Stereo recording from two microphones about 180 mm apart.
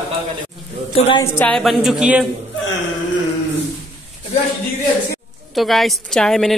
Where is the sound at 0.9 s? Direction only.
35° left (ahead or behind).